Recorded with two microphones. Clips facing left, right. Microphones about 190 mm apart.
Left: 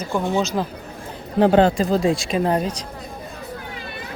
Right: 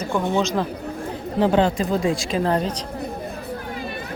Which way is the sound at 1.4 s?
45° left (ahead or behind).